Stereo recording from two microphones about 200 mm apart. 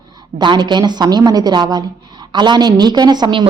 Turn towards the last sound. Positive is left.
turn(degrees=-20)  # may be behind; listen again after turning